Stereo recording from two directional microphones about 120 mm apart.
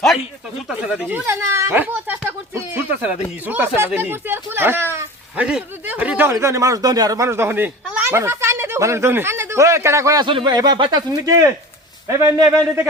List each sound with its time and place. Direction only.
0.7 s speech: 10° right (ahead or behind)
2.5 s a sound: 20° right (ahead or behind)
3.4 s speech: 15° right (ahead or behind)
5.5 s a sound: 10° right (ahead or behind)
6.3 s speech: 25° right (ahead or behind)
10.2 s speech: 40° right (ahead or behind); by 12.5 s 25° right (ahead or behind)